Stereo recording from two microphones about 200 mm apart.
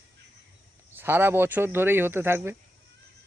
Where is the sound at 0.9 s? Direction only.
10° right (ahead or behind).